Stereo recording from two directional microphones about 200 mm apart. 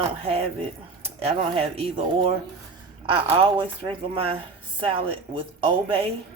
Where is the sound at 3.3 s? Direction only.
25° right (ahead or behind).